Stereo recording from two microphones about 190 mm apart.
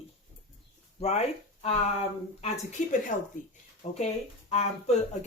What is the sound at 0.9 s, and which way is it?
Speech, 35° left (ahead or behind).